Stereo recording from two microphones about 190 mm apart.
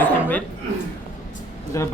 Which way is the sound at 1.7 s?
15° left (ahead or behind).